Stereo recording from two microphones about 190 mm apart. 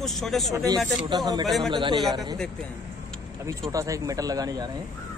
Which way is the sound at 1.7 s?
25° right (ahead or behind).